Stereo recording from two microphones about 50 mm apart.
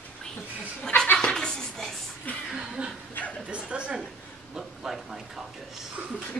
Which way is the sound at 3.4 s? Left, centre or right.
Right.